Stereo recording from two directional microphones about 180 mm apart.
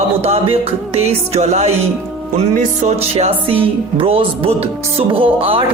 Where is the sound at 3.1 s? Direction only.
30° right (ahead or behind).